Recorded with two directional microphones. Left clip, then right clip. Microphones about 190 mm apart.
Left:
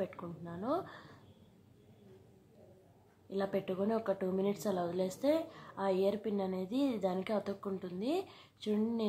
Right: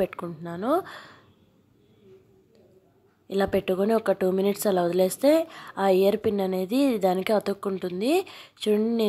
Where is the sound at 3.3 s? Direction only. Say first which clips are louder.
Right 12 dB; 30° right (ahead or behind).